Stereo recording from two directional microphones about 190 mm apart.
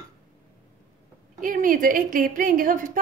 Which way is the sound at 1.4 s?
45° right (ahead or behind).